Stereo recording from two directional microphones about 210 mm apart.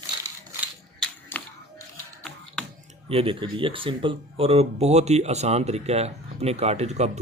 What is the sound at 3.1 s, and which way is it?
Speech, 25° right (ahead or behind).